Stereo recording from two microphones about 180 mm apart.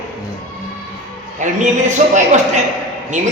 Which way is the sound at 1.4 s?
45° right (ahead or behind).